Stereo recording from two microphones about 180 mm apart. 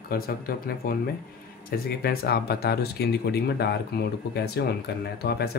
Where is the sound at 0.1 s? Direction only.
55° left (ahead or behind).